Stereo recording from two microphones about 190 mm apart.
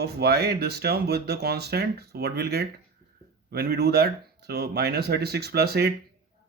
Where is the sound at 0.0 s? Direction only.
55° right (ahead or behind).